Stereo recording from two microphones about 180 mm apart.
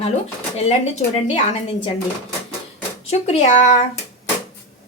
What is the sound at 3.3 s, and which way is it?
Speech, 40° left (ahead or behind).